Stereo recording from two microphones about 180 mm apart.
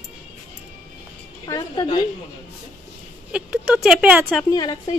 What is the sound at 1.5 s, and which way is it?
Speech, 20° left (ahead or behind).